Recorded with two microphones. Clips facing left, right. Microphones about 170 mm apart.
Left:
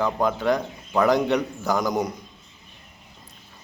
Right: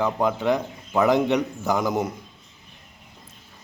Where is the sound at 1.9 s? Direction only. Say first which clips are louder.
Even; 5° right (ahead or behind).